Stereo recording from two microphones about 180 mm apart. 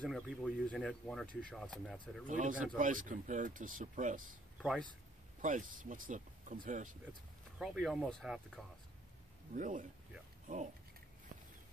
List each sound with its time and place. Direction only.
0.0 s speech: centre (ahead or behind)
2.2 s speech: 45° right (ahead or behind)
5.4 s speech: 45° right (ahead or behind)
7.5 s speech: centre (ahead or behind)
9.5 s speech: 45° right (ahead or behind)